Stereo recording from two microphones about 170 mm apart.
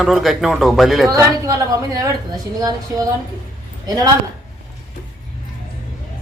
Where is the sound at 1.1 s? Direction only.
20° right (ahead or behind).